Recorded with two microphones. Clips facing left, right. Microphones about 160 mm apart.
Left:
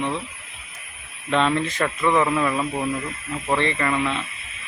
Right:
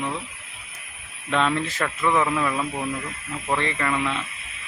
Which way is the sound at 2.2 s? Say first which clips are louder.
Left 2 dB; 5° left (ahead or behind).